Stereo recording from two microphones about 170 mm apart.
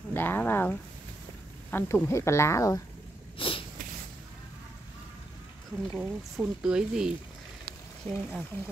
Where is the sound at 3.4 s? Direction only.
30° left (ahead or behind).